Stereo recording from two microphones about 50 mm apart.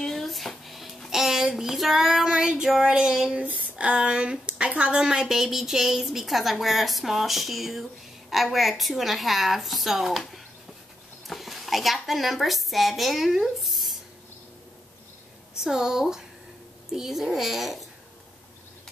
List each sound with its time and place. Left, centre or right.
0.0 s music: centre
2.8 s speech: centre
3.3 s a woman's voice: right; by 13.9 s centre
15.6 s a woman's voice: centre